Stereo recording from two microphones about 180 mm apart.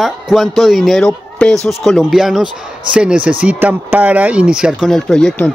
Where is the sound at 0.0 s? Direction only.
Centre (ahead or behind).